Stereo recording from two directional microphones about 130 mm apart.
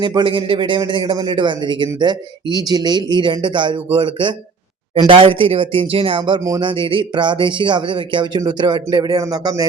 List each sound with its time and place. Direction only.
0.0 s speech: 35° right (ahead or behind)
6.4 s speech: 25° right (ahead or behind)
6.7 s speech: 40° right (ahead or behind)